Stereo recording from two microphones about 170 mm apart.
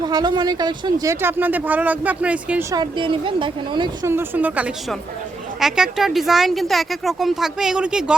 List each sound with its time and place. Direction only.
0.0 s speech: 25° right (ahead or behind); by 2.6 s 5° right (ahead or behind)
2.7 s a woman's voice: 25° right (ahead or behind)
4.0 s speech: 15° right (ahead or behind)